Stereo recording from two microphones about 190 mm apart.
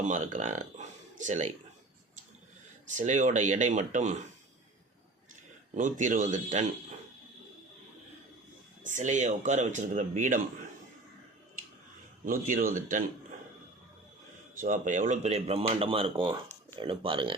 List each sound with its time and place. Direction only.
0.1 s speech: 40° right (ahead or behind)
3.0 s speech: 40° right (ahead or behind)
5.7 s speech: 40° right (ahead or behind)
8.8 s speech: 40° right (ahead or behind)
12.2 s speech: 45° right (ahead or behind)
14.6 s speech: 40° right (ahead or behind)